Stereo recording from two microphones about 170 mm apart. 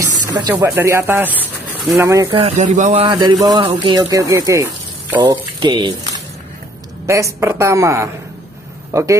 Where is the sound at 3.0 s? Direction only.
25° right (ahead or behind).